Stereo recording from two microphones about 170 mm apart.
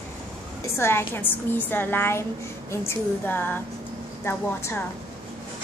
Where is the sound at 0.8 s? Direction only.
15° left (ahead or behind).